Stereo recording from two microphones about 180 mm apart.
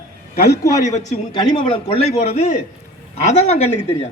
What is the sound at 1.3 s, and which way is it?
A man's voice, 35° left (ahead or behind).